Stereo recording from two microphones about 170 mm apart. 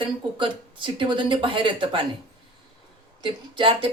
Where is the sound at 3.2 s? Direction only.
30° right (ahead or behind).